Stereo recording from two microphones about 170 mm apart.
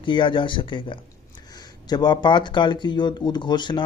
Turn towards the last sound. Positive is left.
turn(degrees=25)  # may be behind; listen again after turning